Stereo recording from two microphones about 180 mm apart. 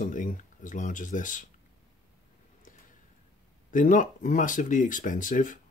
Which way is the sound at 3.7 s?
45° left (ahead or behind).